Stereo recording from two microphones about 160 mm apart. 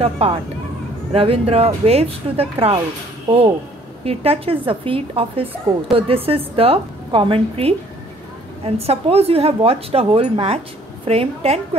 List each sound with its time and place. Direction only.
0.2 s a woman's voice: 40° right (ahead or behind)